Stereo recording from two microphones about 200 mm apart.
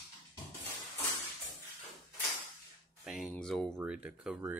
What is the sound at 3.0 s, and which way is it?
Speech, centre (ahead or behind).